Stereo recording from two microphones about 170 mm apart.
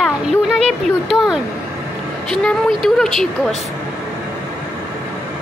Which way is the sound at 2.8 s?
Centre (ahead or behind).